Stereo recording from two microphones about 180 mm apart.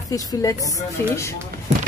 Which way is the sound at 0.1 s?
20° left (ahead or behind).